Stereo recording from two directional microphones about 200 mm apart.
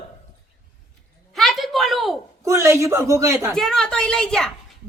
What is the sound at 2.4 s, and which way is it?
A man's voice, 15° right (ahead or behind).